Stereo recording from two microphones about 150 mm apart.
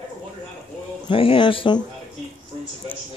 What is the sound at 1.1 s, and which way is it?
Speech, 35° left (ahead or behind).